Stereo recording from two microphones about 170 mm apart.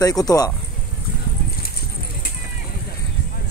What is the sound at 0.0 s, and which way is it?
Speech, 20° left (ahead or behind).